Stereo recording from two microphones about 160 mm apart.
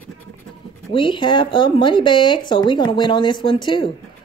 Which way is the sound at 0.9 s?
30° left (ahead or behind).